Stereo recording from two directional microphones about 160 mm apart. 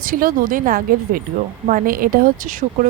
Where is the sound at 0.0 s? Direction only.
60° right (ahead or behind).